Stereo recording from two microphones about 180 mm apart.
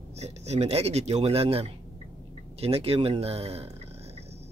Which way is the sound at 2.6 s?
35° right (ahead or behind).